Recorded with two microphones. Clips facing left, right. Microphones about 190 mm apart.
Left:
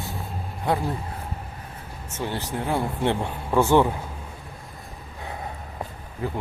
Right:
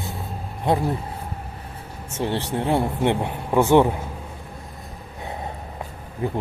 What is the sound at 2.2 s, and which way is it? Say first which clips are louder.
Speech: right 4 dB; 30° right (ahead or behind).